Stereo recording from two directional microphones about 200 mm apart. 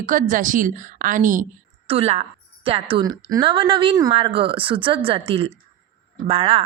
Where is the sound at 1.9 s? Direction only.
30° right (ahead or behind).